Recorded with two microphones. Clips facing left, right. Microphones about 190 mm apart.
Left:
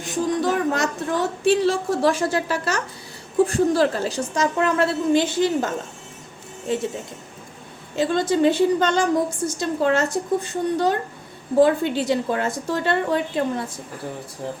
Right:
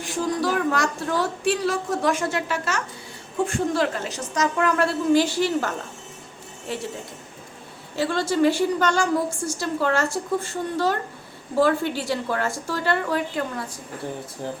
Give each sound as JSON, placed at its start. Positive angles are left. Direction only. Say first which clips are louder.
{"t": 0.0, "sound": "a woman's voice", "louder": "left 2 dB", "side_deg": 20}
{"t": 7.9, "sound": "a woman's voice", "louder": "left 2 dB", "side_deg": 20}
{"t": 14.4, "sound": "speech", "louder": "left 1 dB", "side_deg": 0}